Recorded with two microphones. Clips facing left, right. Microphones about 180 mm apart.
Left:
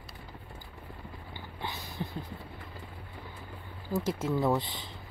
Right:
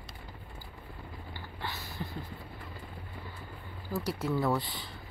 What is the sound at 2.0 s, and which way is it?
Vehicle, 20° left (ahead or behind).